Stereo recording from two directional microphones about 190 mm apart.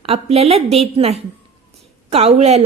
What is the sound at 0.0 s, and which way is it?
A woman's voice, 30° right (ahead or behind).